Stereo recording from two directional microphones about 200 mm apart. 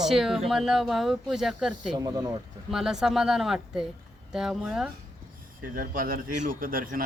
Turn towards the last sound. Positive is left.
turn(degrees=-45)  # may be behind; listen again after turning